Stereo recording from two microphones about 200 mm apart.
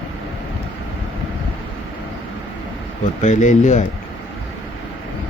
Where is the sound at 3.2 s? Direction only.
40° left (ahead or behind).